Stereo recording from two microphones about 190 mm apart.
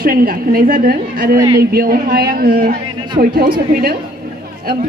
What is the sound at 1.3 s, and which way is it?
Speech, 20° right (ahead or behind).